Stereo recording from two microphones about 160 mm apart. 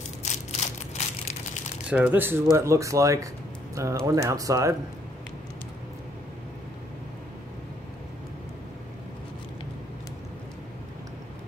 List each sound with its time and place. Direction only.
0.2 s crushing: 45° left (ahead or behind)
1.9 s speech: 10° right (ahead or behind)